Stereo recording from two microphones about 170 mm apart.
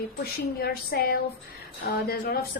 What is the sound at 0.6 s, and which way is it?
A woman's voice, 65° left (ahead or behind).